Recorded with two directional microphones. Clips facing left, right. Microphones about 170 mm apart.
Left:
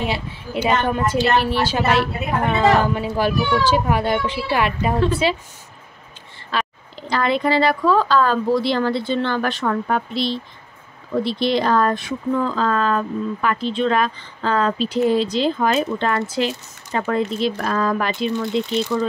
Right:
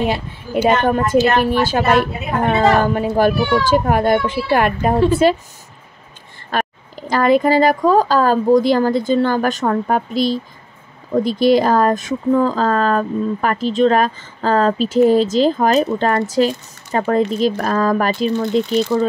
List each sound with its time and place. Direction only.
0.0 s a woman's voice: 50° right (ahead or behind)
6.5 s speech: 45° right (ahead or behind)